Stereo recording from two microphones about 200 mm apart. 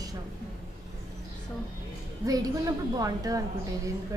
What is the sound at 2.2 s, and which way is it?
A woman's voice, 20° right (ahead or behind).